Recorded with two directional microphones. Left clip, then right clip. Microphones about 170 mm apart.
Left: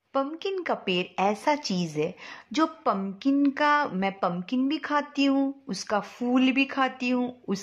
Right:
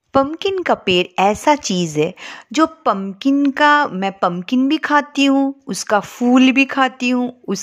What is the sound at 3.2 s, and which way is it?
A woman's voice, 45° right (ahead or behind).